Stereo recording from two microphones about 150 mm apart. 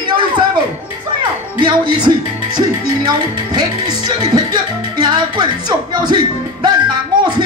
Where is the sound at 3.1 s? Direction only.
30° right (ahead or behind).